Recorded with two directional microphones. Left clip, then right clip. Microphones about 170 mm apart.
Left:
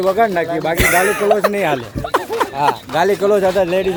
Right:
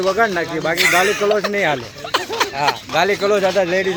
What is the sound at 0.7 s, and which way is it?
Speech, 85° left.